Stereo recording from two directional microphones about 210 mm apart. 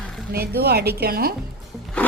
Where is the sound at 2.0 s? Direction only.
10° left (ahead or behind).